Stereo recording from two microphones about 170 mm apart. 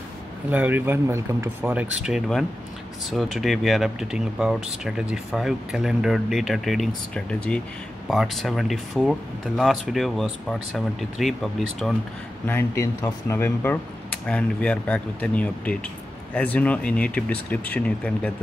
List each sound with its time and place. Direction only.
0.5 s speech: 10° right (ahead or behind)
12.4 s speech: 15° left (ahead or behind)